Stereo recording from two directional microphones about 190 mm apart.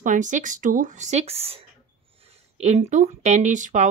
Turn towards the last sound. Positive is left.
turn(degrees=-40)  # may be behind; listen again after turning